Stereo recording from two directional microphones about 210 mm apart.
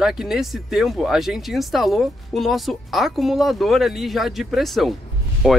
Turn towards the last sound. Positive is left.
turn(degrees=0)  # may be behind; listen again after turning